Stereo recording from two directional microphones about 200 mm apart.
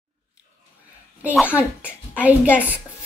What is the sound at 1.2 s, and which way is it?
A child's voice, 5° right (ahead or behind).